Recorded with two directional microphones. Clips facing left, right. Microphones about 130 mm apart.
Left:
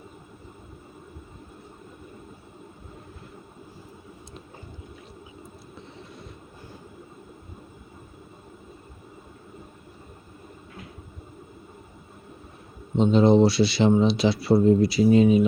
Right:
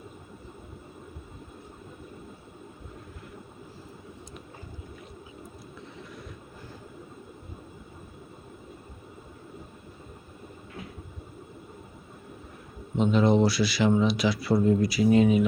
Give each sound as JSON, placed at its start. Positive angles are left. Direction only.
{"t": 13.0, "sound": "speech", "side_deg": 25}